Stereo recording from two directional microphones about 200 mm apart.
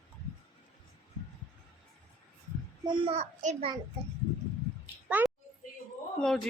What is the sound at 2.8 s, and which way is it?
Speech, 25° right (ahead or behind).